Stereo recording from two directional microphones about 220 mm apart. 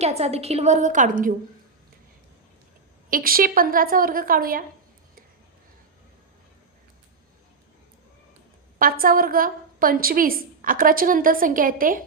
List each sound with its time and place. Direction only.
0.0 s a woman's voice: 30° right (ahead or behind)
3.1 s a woman's voice: 40° right (ahead or behind)
8.8 s a woman's voice: 40° right (ahead or behind)